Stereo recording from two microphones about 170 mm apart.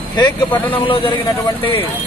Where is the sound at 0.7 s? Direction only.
30° left (ahead or behind).